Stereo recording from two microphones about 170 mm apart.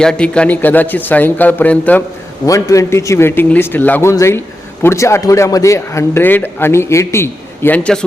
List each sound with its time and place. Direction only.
0.0 s a man's voice: 5° left (ahead or behind)
2.5 s a man's voice: 20° left (ahead or behind)